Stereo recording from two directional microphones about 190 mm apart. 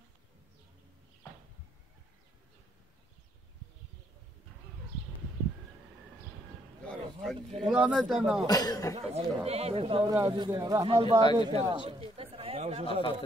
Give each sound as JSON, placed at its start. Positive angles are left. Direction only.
{"t": 6.9, "sound": "speech", "side_deg": 0}
{"t": 8.5, "sound": "speech", "side_deg": 20}
{"t": 8.9, "sound": "speech", "side_deg": -30}